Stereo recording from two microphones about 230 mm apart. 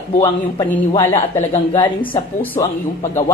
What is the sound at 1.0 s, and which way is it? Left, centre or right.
A man's voice, centre.